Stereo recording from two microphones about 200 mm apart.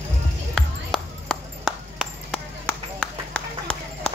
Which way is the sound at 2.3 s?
5° left (ahead or behind).